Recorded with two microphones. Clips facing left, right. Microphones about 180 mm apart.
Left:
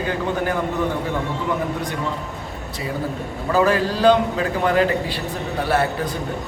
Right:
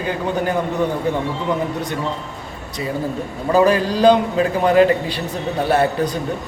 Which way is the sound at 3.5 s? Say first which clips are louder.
Right 3 dB; 15° right (ahead or behind).